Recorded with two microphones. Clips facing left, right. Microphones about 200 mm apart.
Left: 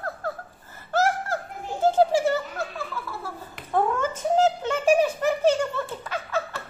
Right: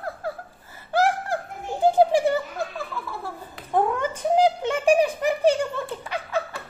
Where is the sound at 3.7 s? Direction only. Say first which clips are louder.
Right 1 dB; 15° right (ahead or behind).